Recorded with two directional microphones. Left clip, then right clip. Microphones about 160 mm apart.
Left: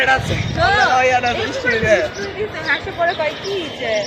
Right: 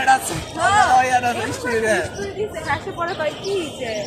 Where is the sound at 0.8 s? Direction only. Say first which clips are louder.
Even; 50° right (ahead or behind).